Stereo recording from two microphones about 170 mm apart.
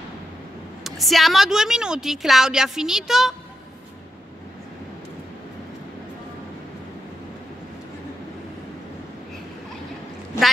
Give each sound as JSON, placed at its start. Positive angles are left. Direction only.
{"t": 0.8, "sound": "a woman's voice", "side_deg": 0}